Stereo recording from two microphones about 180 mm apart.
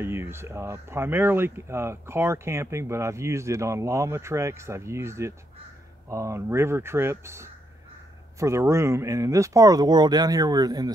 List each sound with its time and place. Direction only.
0.0 s speech: 15° right (ahead or behind)